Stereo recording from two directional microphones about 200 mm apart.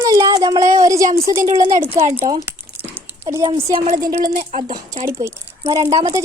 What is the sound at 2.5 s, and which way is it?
Crumpling, 10° right (ahead or behind).